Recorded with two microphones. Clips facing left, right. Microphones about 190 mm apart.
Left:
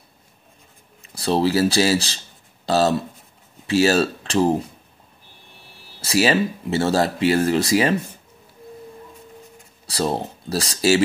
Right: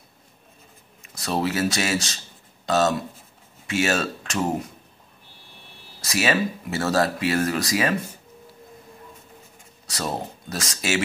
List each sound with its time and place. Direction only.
1.0 s speech: 30° left (ahead or behind)
5.9 s speech: 30° left (ahead or behind)
9.8 s speech: 30° left (ahead or behind)